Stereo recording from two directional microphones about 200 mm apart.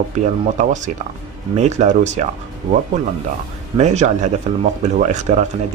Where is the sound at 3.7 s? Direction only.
35° right (ahead or behind).